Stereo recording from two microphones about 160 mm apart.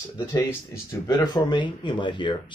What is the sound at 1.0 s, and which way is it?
Speech, 20° left (ahead or behind).